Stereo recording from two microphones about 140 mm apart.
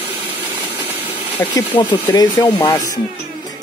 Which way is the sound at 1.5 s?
30° left (ahead or behind).